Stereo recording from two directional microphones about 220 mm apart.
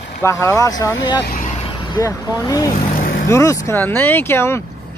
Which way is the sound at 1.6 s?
15° left (ahead or behind).